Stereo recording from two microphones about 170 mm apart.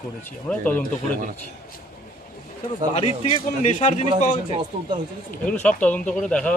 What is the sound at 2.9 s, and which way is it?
A man's voice, 35° left (ahead or behind).